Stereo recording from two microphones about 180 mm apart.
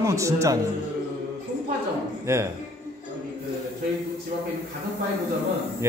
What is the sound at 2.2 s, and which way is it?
Speech, 15° right (ahead or behind).